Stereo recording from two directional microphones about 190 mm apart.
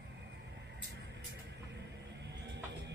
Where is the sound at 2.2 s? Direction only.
60° right (ahead or behind).